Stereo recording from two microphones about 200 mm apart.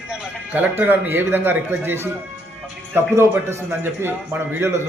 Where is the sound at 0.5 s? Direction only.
10° right (ahead or behind).